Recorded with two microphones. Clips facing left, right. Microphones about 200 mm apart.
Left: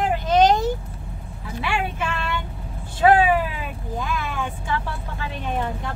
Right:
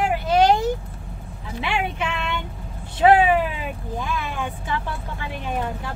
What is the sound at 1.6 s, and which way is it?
Speech, 20° right (ahead or behind).